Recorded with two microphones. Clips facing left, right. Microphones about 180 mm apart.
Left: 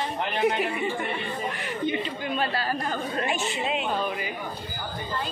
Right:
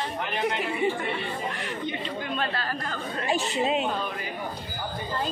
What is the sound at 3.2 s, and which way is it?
Speech, 35° right (ahead or behind).